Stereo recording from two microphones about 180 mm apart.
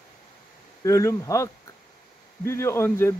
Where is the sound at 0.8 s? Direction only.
15° left (ahead or behind).